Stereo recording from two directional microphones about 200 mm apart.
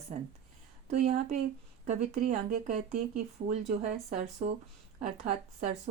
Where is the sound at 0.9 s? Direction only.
35° right (ahead or behind).